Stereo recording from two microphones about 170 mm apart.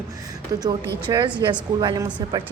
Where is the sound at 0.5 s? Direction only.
25° right (ahead or behind).